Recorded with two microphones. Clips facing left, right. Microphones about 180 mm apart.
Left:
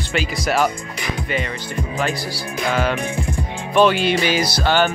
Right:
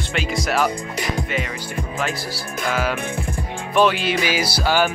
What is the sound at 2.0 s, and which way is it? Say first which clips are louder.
Speech: left 3 dB; centre (ahead or behind).